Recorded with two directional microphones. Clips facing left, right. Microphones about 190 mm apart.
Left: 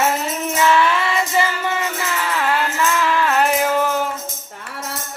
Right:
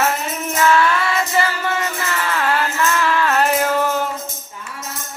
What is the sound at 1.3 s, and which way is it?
Music, 15° left (ahead or behind).